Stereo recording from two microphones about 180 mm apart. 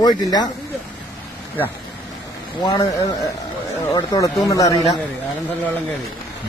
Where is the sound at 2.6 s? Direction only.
20° left (ahead or behind).